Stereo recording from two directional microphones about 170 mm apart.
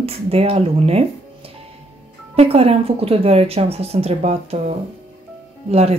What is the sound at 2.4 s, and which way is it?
Speech, 35° right (ahead or behind).